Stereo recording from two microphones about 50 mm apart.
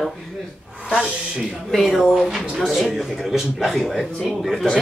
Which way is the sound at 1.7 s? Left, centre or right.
Centre.